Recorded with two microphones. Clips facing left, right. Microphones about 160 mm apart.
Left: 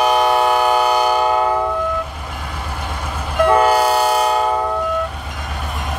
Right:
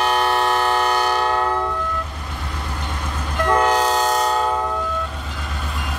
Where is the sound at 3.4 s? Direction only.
10° left (ahead or behind).